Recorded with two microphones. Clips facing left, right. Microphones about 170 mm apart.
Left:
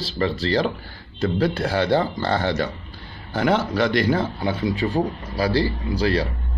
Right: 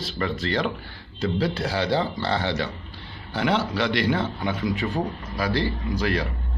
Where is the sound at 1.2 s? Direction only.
55° left (ahead or behind).